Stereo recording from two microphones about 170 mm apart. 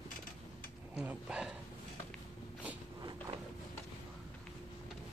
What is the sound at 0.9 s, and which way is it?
Dog, 5° right (ahead or behind).